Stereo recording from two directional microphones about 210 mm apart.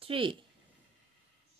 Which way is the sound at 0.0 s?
25° right (ahead or behind).